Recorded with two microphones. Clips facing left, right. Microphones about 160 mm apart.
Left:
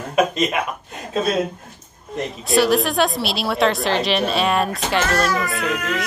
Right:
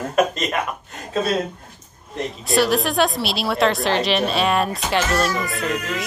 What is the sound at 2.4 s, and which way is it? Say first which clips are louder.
A woman's voice: left 2 dB; centre (ahead or behind).